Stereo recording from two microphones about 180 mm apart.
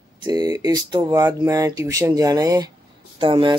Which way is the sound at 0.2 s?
20° right (ahead or behind).